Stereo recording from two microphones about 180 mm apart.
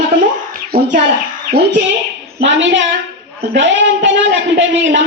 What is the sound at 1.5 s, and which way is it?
Speech, 60° right (ahead or behind).